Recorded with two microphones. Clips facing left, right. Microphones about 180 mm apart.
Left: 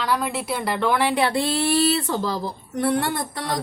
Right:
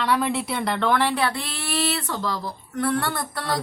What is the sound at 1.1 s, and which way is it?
A woman's voice, 25° left (ahead or behind).